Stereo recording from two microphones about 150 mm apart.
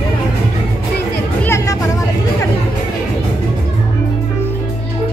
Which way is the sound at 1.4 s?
15° left (ahead or behind).